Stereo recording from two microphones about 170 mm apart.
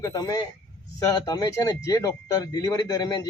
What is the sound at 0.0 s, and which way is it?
Speech, 20° left (ahead or behind).